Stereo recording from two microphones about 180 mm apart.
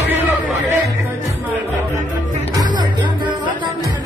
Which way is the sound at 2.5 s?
20° right (ahead or behind).